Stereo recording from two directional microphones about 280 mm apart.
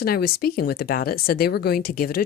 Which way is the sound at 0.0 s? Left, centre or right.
Left.